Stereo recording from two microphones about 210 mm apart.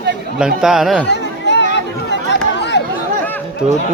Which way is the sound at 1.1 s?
55° left (ahead or behind).